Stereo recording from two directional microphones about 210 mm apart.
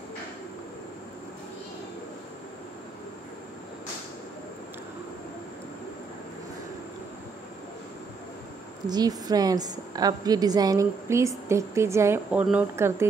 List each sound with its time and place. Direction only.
8.8 s a woman's voice: 20° right (ahead or behind)